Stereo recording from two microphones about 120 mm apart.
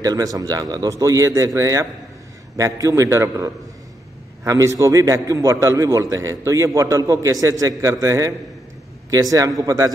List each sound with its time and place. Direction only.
0.0 s a man's voice: 30° right (ahead or behind)